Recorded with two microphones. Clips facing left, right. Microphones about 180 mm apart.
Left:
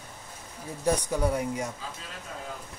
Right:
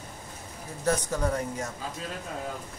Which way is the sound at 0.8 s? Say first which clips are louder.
Left 1 dB; 10° left (ahead or behind).